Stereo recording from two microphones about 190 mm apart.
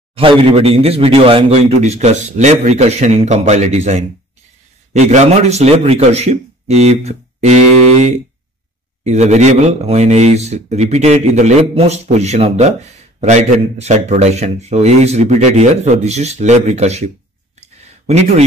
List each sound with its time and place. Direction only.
0.1 s a man's voice: 30° right (ahead or behind)
9.0 s a man's voice: 35° right (ahead or behind)
17.6 s a sound: 35° right (ahead or behind)